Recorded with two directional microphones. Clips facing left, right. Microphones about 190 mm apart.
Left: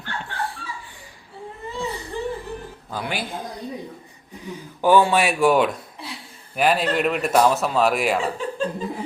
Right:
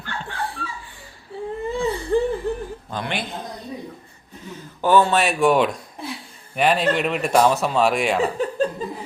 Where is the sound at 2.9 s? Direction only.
5° left (ahead or behind).